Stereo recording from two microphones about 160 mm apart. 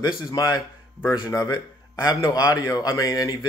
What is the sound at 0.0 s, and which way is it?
Speech, 25° left (ahead or behind).